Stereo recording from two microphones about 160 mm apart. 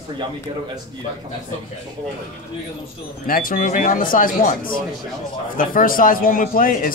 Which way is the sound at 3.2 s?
60° left (ahead or behind).